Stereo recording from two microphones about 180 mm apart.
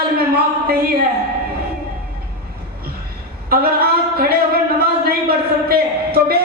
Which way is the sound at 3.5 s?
55° right (ahead or behind).